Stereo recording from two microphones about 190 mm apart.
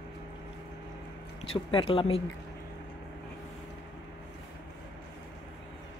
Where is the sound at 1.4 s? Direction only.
30° left (ahead or behind).